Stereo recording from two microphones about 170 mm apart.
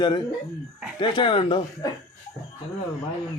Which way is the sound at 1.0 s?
30° left (ahead or behind).